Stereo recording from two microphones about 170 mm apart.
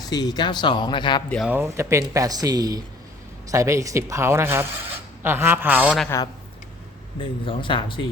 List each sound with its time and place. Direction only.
0.0 s a man's voice: 25° left (ahead or behind)
1.5 s speech: 15° right (ahead or behind)
7.2 s a man's voice: 30° left (ahead or behind)